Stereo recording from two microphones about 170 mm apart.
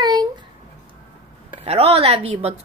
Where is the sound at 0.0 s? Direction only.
25° right (ahead or behind).